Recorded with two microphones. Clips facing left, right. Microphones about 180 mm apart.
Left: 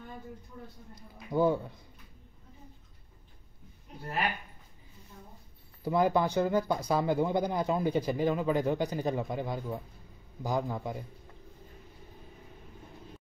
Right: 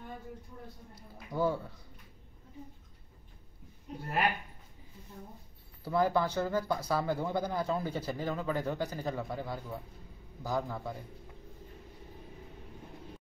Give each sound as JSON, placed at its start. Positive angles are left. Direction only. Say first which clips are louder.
{"t": 0.9, "sound": "speech", "louder": "left 5 dB", "side_deg": 20}
{"t": 5.9, "sound": "speech", "louder": "left 2 dB", "side_deg": 15}